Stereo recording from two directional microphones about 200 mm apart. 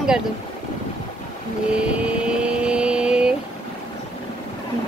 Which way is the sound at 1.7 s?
5° right (ahead or behind).